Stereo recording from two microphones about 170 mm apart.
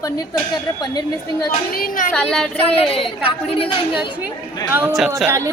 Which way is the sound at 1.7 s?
55° left (ahead or behind).